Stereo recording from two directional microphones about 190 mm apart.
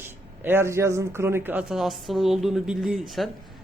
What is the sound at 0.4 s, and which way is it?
A woman's voice, 10° right (ahead or behind).